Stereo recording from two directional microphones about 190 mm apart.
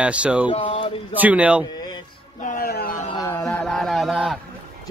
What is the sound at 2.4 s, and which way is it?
Speech, 50° left (ahead or behind).